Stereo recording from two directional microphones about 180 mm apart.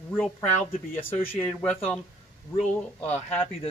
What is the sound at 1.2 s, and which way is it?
Speech, 10° left (ahead or behind).